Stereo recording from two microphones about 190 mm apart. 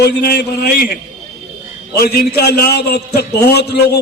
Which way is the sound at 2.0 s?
55° left (ahead or behind).